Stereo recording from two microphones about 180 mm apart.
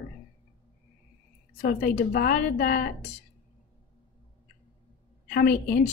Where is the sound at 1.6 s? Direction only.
60° left (ahead or behind).